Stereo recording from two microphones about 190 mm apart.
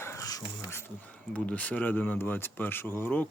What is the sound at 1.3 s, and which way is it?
Speech, 5° left (ahead or behind).